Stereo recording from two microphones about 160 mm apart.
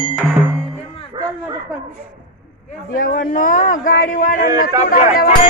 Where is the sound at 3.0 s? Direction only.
55° left (ahead or behind).